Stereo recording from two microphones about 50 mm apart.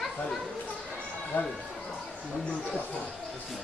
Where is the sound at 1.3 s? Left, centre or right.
Left.